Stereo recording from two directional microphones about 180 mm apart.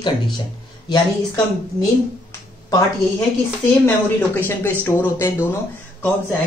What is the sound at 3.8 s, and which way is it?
Speech, 10° left (ahead or behind).